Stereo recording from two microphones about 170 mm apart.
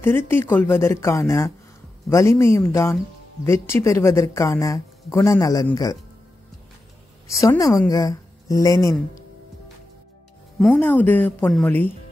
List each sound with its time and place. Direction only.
0.0 s speech: 15° left (ahead or behind)
7.2 s a woman's voice: 20° left (ahead or behind)
10.6 s speech: 10° left (ahead or behind)